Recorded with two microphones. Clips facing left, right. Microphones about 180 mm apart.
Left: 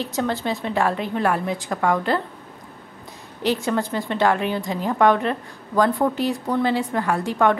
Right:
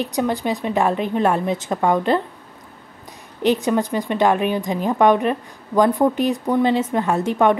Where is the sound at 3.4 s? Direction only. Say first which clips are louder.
Right 4 dB; 20° right (ahead or behind).